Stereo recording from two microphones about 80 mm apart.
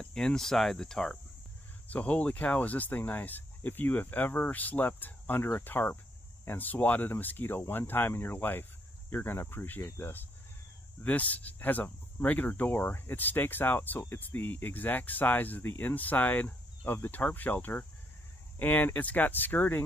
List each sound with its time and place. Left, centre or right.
0.0 s cricket: centre
1.9 s speech: centre
11.1 s speech: centre